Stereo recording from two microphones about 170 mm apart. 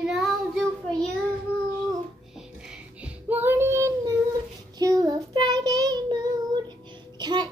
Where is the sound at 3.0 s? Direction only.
10° right (ahead or behind).